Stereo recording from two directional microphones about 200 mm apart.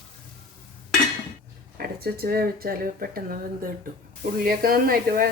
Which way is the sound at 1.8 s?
50° right (ahead or behind).